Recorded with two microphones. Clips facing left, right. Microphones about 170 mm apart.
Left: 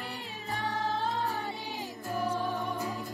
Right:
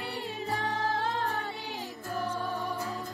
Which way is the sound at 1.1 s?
Centre (ahead or behind).